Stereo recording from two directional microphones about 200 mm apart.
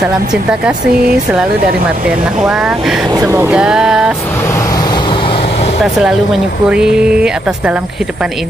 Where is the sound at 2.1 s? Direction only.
5° right (ahead or behind).